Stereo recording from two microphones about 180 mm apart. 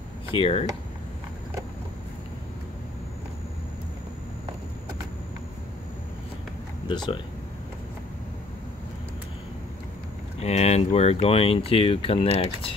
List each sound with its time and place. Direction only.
0.3 s speech: 30° left (ahead or behind)
6.9 s speech: 25° left (ahead or behind)
10.4 s speech: 35° left (ahead or behind)